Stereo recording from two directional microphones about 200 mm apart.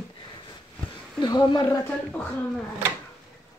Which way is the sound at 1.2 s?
20° left (ahead or behind).